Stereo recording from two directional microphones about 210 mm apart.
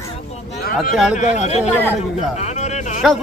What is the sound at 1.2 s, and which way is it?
Speech, 35° left (ahead or behind).